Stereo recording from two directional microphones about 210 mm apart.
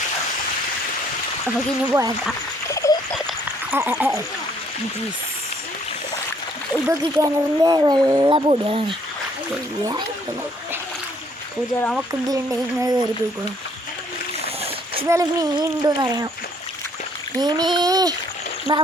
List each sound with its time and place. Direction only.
1.9 s speech: 15° right (ahead or behind)
2.6 s a sound: 15° left (ahead or behind)
3.2 s a sound: centre (ahead or behind)
3.8 s speech: 10° right (ahead or behind)
6.8 s speech: 15° right (ahead or behind)
11.8 s speech: 5° left (ahead or behind)
12.3 s speech: 15° right (ahead or behind)
14.4 s splash: 30° right (ahead or behind)
15.0 s speech: 15° right (ahead or behind)
17.4 s speech: 20° right (ahead or behind)